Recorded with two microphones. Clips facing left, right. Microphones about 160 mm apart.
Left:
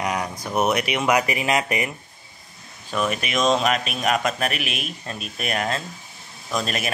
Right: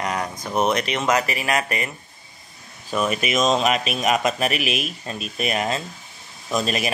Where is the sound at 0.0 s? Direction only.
10° left (ahead or behind).